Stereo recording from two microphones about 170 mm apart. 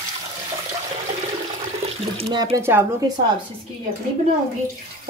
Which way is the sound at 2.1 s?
35° right (ahead or behind).